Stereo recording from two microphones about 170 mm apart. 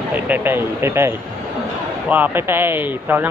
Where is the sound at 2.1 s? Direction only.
10° right (ahead or behind).